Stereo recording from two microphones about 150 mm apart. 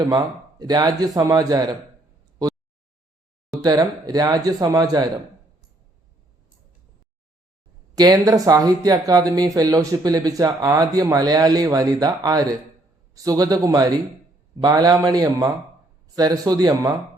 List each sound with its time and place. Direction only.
0.6 s speech: 25° right (ahead or behind)
3.6 s speech: 25° right (ahead or behind)
7.9 s speech: 25° right (ahead or behind)